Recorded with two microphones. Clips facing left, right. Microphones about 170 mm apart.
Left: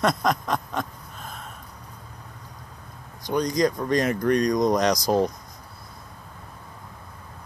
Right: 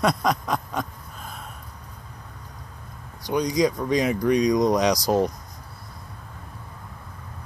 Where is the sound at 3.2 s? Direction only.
15° right (ahead or behind).